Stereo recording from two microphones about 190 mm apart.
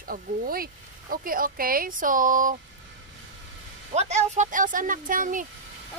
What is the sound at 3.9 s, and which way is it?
Speech, 35° right (ahead or behind).